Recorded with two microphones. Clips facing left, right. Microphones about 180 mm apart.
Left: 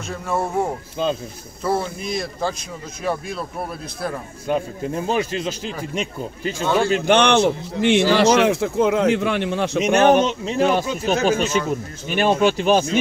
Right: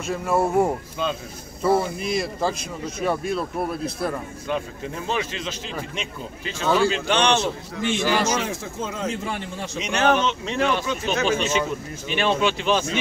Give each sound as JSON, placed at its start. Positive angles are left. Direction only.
{"t": 0.0, "sound": "speech", "side_deg": -5}
{"t": 1.0, "sound": "speech", "side_deg": 35}
{"t": 1.6, "sound": "speech", "side_deg": 0}
{"t": 4.5, "sound": "a man's voice", "side_deg": 40}
{"t": 7.8, "sound": "speech", "side_deg": 70}
{"t": 9.8, "sound": "a man's voice", "side_deg": 50}